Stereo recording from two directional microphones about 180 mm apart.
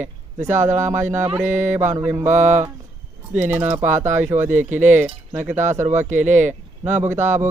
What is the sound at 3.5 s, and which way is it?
Mantra, 10° right (ahead or behind).